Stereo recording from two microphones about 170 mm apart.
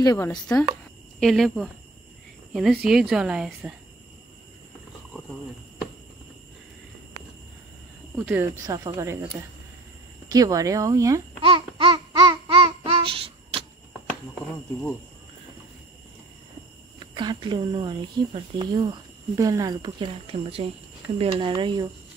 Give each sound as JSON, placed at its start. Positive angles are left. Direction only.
{"t": 0.0, "sound": "speech", "side_deg": 20}
{"t": 1.2, "sound": "speech", "side_deg": 0}
{"t": 5.1, "sound": "a sound", "side_deg": 0}
{"t": 8.6, "sound": "speech", "side_deg": -20}
{"t": 10.2, "sound": "speech", "side_deg": -20}
{"t": 11.4, "sound": "babbling", "side_deg": -30}
{"t": 14.5, "sound": "speech", "side_deg": 5}
{"t": 17.0, "sound": "speech", "side_deg": -30}